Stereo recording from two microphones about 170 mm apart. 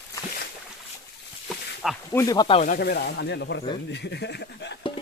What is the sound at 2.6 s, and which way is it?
Speech, 65° left (ahead or behind).